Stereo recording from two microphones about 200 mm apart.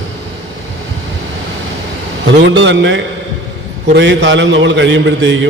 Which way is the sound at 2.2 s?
65° right (ahead or behind).